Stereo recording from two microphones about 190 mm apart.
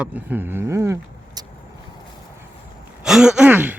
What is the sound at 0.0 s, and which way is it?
Speech, 10° right (ahead or behind).